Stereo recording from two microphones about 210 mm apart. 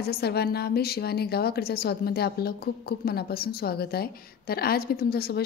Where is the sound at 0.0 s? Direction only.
50° left (ahead or behind).